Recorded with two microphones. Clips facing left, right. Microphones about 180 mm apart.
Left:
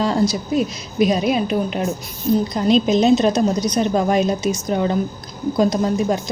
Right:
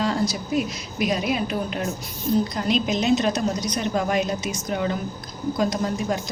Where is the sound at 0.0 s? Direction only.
30° left (ahead or behind).